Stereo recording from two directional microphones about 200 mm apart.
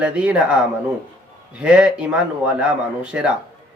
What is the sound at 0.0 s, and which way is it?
Speech, 5° right (ahead or behind).